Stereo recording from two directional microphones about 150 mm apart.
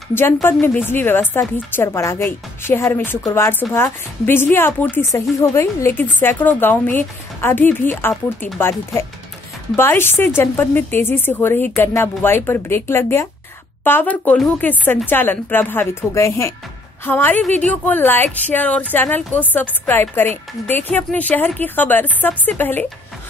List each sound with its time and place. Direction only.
0.1 s speech: 15° left (ahead or behind)